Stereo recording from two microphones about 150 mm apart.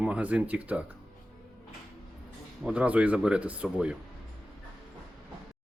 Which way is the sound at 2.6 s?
10° right (ahead or behind).